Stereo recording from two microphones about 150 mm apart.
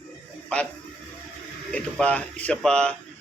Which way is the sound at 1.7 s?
10° left (ahead or behind).